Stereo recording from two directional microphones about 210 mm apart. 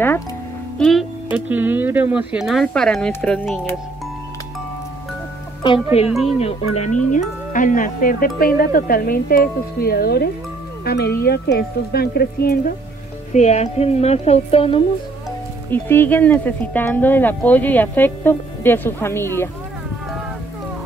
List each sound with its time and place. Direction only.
0.7 s speech: centre (ahead or behind)
5.6 s speech: 25° left (ahead or behind)
6.0 s speech: centre (ahead or behind)
6.7 s speech: 35° left (ahead or behind)
13.3 s speech: 35° left (ahead or behind)
15.7 s speech: 10° left (ahead or behind)